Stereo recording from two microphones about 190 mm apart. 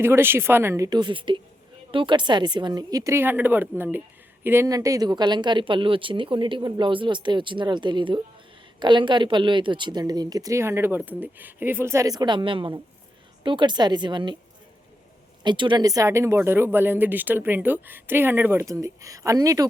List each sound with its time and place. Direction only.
0.0 s a woman's voice: 10° right (ahead or behind)
15.4 s speech: 25° right (ahead or behind)